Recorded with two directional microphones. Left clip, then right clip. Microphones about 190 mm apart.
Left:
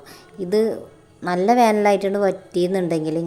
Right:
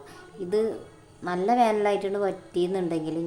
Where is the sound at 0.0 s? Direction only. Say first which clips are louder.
Left 5 dB; 30° left (ahead or behind).